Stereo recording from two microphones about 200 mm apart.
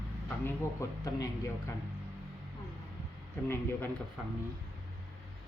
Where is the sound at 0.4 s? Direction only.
15° left (ahead or behind).